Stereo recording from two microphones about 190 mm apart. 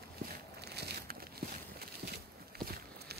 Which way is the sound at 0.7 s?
60° right (ahead or behind).